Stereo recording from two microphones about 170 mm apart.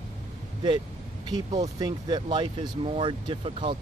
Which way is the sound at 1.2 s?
25° right (ahead or behind).